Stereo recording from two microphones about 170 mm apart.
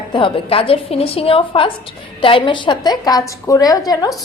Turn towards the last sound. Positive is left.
turn(degrees=20)  # may be behind; listen again after turning